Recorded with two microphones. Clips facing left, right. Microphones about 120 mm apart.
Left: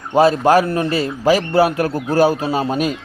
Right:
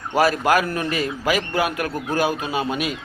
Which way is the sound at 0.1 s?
25° left (ahead or behind).